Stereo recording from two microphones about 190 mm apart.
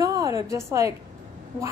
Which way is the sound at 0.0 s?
20° right (ahead or behind).